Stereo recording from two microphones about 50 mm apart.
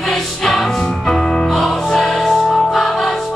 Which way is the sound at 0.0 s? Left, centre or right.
Centre.